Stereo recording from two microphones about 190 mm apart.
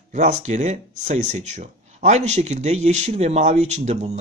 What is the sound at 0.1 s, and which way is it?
Speech, 40° right (ahead or behind).